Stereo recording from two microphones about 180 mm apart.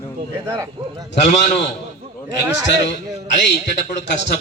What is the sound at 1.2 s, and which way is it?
Speech, 40° left (ahead or behind).